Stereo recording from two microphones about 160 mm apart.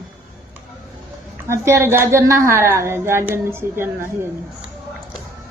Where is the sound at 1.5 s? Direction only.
15° right (ahead or behind).